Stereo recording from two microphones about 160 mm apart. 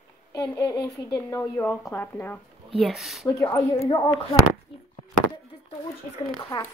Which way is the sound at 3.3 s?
20° left (ahead or behind).